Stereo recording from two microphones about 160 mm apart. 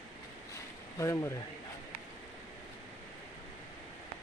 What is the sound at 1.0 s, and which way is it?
Speech, 20° left (ahead or behind).